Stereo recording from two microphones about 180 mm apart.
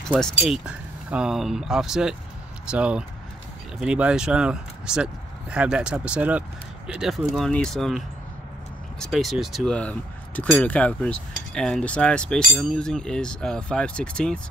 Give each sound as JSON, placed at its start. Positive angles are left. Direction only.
{"t": 0.4, "sound": "speech", "side_deg": -5}
{"t": 9.0, "sound": "speech", "side_deg": 0}